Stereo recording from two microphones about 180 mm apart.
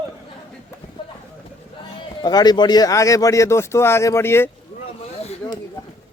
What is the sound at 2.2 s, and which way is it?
Speech, 20° left (ahead or behind).